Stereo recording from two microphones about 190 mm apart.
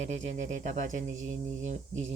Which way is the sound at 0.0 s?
35° right (ahead or behind).